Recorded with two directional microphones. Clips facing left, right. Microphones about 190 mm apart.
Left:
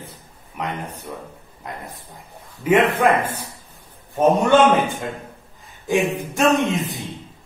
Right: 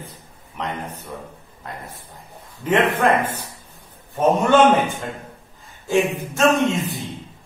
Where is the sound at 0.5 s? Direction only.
10° left (ahead or behind).